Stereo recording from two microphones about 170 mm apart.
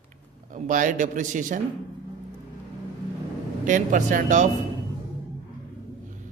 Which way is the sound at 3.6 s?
50° right (ahead or behind).